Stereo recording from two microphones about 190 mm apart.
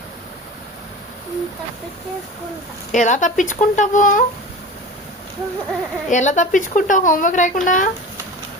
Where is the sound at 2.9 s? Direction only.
40° left (ahead or behind).